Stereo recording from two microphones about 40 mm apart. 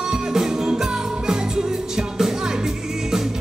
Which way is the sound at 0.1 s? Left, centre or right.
Centre.